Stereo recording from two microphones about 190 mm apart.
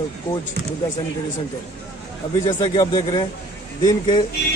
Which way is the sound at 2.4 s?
20° left (ahead or behind).